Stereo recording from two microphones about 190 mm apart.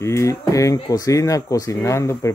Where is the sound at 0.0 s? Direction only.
15° left (ahead or behind).